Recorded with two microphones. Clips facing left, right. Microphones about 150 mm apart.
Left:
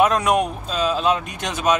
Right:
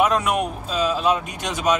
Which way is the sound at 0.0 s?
10° right (ahead or behind).